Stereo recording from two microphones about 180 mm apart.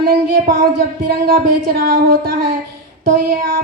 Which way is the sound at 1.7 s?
60° right (ahead or behind).